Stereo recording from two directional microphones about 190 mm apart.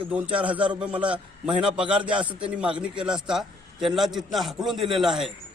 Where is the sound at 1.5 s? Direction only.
25° right (ahead or behind).